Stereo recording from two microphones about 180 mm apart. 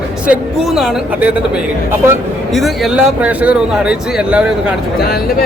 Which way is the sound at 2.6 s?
Centre (ahead or behind).